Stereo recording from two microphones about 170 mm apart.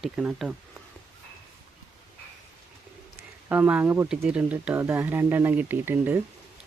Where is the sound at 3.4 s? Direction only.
10° right (ahead or behind).